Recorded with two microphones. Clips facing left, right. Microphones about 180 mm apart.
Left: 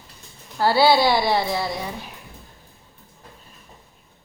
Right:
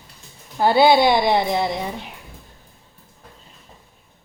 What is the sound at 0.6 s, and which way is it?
A woman's voice, 20° right (ahead or behind).